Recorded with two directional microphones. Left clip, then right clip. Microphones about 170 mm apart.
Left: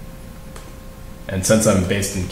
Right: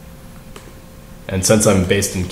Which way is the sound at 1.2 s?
45° right (ahead or behind).